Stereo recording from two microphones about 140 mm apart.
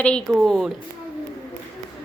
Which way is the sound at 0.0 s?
5° left (ahead or behind).